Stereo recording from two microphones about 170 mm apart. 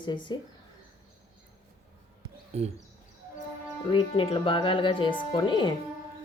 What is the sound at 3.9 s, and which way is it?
Speech, 30° left (ahead or behind).